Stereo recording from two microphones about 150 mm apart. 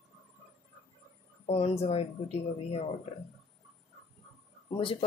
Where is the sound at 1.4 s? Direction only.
45° left (ahead or behind).